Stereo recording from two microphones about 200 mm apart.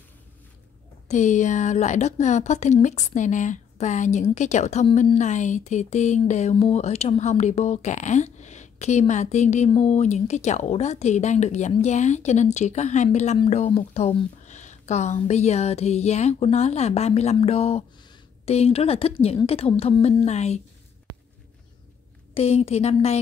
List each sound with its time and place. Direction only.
1.0 s a woman's voice: 35° left (ahead or behind)
22.3 s a woman's voice: 30° left (ahead or behind)